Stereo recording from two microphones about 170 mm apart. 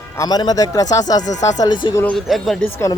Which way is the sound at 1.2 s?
45° left (ahead or behind).